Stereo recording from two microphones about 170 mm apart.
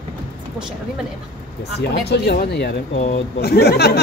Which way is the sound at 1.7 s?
75° left (ahead or behind).